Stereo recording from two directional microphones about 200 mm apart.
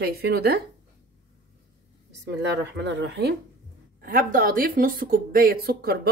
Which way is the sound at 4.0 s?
45° right (ahead or behind).